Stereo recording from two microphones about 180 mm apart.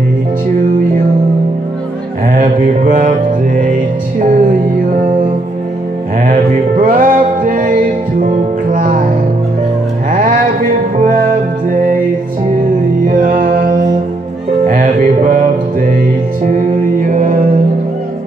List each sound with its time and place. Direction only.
2.9 s music: 50° right (ahead or behind)
6.8 s music: 50° right (ahead or behind)
10.1 s music: 50° right (ahead or behind)
13.0 s music: 50° right (ahead or behind)
16.4 s music: 50° right (ahead or behind)